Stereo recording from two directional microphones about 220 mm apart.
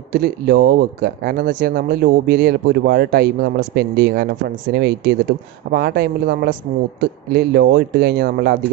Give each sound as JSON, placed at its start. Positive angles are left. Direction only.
{"t": 0.1, "sound": "speech", "side_deg": -45}